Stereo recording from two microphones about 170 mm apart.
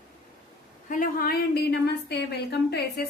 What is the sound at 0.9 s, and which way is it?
A woman's voice, 55° left (ahead or behind).